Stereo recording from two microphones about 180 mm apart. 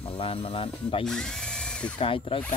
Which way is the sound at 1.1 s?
5° left (ahead or behind).